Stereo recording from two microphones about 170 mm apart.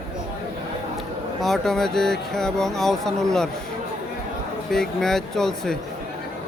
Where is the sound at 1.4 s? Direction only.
Centre (ahead or behind).